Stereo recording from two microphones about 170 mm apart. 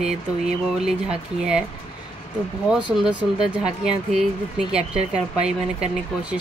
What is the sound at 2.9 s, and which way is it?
Speech, 5° right (ahead or behind).